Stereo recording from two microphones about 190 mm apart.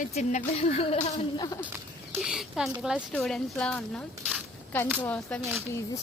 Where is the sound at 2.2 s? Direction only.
Centre (ahead or behind).